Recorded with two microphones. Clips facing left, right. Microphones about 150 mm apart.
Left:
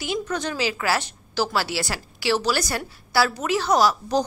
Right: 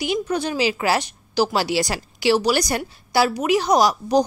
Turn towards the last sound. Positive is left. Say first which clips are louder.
# right 3 dB
turn(degrees=-15)  # may be behind; listen again after turning